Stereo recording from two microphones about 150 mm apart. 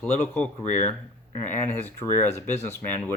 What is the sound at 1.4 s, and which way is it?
Speech, 15° left (ahead or behind).